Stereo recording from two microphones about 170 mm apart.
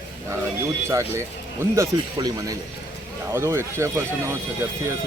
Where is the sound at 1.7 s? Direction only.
20° right (ahead or behind).